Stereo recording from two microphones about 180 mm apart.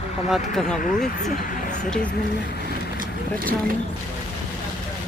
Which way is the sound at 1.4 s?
50° left (ahead or behind).